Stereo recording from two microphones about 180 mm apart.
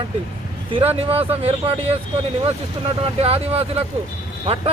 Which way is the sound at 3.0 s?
35° right (ahead or behind).